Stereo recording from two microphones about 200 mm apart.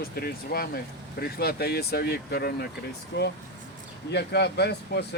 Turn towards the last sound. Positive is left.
turn(degrees=55)  # may be behind; listen again after turning